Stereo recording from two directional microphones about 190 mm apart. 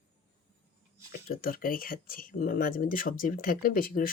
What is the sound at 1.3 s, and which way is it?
Speech, 50° left (ahead or behind).